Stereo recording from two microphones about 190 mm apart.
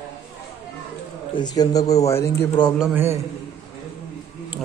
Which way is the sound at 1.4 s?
20° left (ahead or behind).